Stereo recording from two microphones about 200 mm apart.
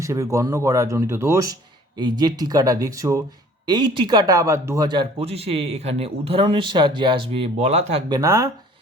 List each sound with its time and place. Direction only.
0.0 s speech: 15° right (ahead or behind); by 8.0 s 30° right (ahead or behind)
8.1 s speech: 15° right (ahead or behind)